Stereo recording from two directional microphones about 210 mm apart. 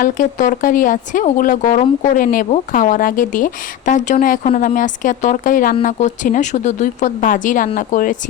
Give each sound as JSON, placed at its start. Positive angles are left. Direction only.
{"t": 0.0, "sound": "speech", "side_deg": 40}